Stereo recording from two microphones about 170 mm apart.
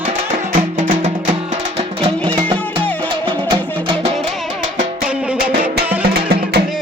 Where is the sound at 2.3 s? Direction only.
25° right (ahead or behind).